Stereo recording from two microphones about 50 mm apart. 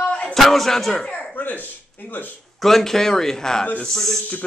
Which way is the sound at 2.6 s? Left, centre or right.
Centre.